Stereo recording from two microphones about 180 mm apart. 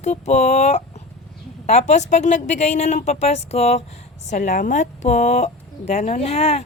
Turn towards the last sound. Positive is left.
turn(degrees=35)  # may be behind; listen again after turning